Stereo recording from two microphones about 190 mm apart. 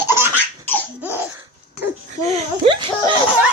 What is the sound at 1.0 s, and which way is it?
Laughter, 10° right (ahead or behind).